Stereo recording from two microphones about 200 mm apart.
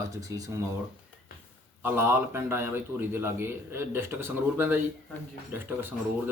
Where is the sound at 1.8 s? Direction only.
10° right (ahead or behind).